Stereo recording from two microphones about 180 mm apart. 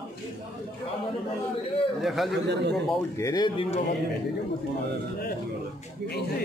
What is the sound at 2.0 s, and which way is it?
Speech, centre (ahead or behind).